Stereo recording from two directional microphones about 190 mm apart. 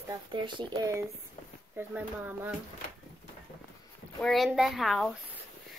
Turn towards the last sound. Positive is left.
turn(degrees=0)  # may be behind; listen again after turning